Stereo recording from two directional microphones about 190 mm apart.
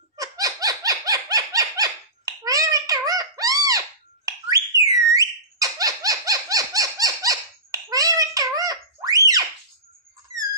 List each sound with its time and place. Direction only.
0.2 s a sound: 20° right (ahead or behind)
4.3 s whistle: 20° right (ahead or behind)
5.6 s dog: 20° right (ahead or behind)